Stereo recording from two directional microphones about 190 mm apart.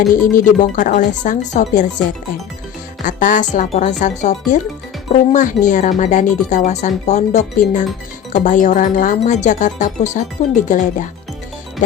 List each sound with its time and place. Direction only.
0.1 s speech: 45° left (ahead or behind)
3.0 s speech: 45° left (ahead or behind)